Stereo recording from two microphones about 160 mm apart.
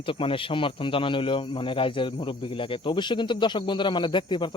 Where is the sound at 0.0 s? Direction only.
35° left (ahead or behind).